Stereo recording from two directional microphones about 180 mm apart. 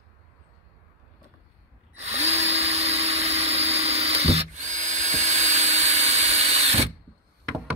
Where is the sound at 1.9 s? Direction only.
40° right (ahead or behind).